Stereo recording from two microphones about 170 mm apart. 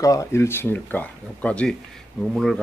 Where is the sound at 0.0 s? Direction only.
20° left (ahead or behind).